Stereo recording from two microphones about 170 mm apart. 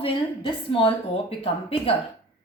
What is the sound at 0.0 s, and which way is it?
A woman's voice, 30° left (ahead or behind).